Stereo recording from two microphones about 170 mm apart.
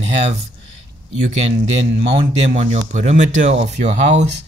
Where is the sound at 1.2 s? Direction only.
40° right (ahead or behind).